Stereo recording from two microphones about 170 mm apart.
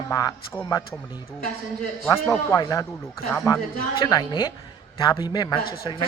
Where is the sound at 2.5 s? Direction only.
20° left (ahead or behind).